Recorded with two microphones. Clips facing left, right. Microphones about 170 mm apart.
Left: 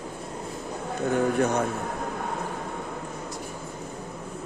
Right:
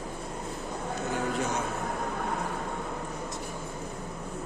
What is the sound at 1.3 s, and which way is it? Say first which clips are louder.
Speech: left 6 dB; 60° left (ahead or behind).